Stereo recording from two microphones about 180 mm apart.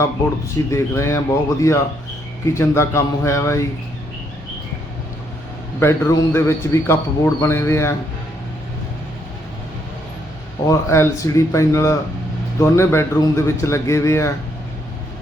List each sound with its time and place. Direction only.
0.0 s speech: 15° left (ahead or behind)
5.8 s speech: 15° left (ahead or behind)
10.7 s speech: 15° left (ahead or behind)